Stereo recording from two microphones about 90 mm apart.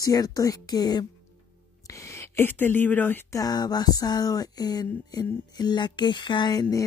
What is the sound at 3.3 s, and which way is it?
Speech, 45° left (ahead or behind).